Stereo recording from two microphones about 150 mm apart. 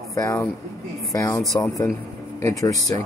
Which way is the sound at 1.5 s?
20° left (ahead or behind).